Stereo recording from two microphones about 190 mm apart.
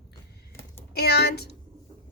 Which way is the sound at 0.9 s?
60° left (ahead or behind).